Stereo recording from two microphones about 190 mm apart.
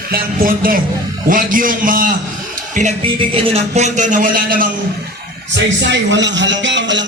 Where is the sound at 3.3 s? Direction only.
30° right (ahead or behind); by 4.7 s 50° right (ahead or behind).